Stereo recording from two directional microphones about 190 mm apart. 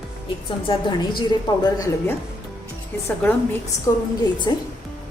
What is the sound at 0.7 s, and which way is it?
Speech, 25° left (ahead or behind).